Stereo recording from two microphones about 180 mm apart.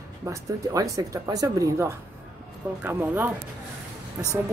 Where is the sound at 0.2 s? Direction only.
20° right (ahead or behind).